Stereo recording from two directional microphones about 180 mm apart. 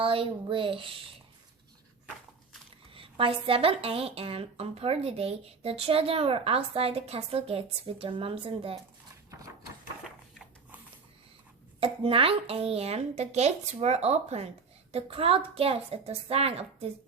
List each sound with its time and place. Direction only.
0.0 s speech: 30° right (ahead or behind)
2.9 s a woman's voice: 30° right (ahead or behind)
10.0 s a sound: 5° right (ahead or behind)
11.8 s a woman's voice: 30° right (ahead or behind)